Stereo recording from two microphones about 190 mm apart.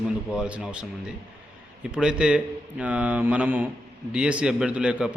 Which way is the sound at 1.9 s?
5° right (ahead or behind).